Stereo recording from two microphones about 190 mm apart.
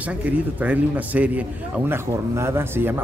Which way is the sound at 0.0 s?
10° right (ahead or behind).